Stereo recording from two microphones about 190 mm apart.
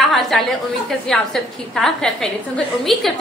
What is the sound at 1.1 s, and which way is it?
A woman's voice, centre (ahead or behind).